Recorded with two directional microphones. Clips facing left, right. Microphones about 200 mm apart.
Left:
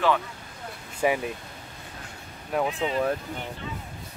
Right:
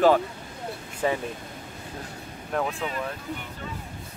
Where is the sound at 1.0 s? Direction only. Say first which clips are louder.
Left 2 dB; 10° left (ahead or behind).